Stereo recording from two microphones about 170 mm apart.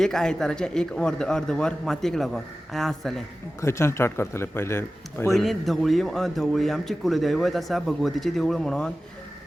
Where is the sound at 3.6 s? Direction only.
15° left (ahead or behind).